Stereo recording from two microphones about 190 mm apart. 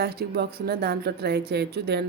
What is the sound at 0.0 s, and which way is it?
Speech, 55° right (ahead or behind).